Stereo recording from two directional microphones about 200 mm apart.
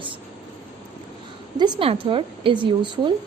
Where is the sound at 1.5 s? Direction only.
20° right (ahead or behind).